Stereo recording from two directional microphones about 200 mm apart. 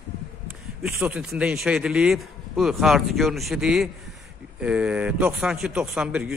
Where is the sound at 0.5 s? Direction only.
5° right (ahead or behind).